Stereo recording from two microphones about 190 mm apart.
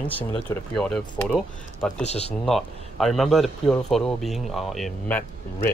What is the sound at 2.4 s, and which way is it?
Speech, centre (ahead or behind).